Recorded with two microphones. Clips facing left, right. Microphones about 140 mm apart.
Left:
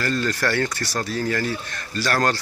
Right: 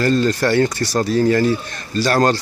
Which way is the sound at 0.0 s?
25° right (ahead or behind).